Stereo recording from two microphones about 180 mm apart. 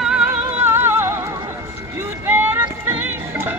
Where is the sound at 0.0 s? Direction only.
5° right (ahead or behind).